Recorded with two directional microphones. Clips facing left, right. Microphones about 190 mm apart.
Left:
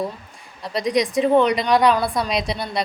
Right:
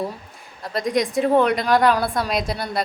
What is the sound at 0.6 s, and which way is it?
A woman's voice, centre (ahead or behind).